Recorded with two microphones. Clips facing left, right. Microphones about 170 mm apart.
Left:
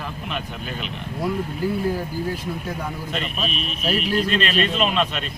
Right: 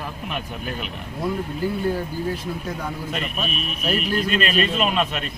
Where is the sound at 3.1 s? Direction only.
5° right (ahead or behind).